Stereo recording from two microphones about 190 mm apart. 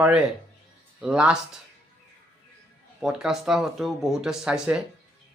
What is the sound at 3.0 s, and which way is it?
Speech, 5° right (ahead or behind).